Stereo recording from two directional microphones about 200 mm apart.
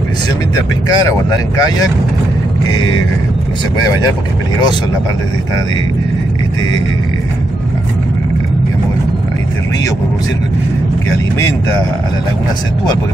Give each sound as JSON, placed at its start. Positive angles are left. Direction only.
{"t": 0.6, "sound": "speech", "side_deg": 15}